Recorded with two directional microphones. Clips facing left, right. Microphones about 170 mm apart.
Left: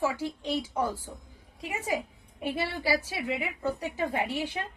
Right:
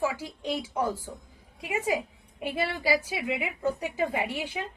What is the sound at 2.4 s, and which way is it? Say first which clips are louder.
A woman's voice: right 1 dB; 15° right (ahead or behind).